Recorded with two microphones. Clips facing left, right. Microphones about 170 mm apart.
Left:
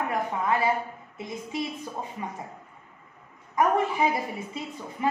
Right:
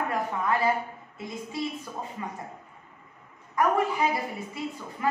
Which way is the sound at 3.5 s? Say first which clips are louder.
Left 1 dB; 20° left (ahead or behind).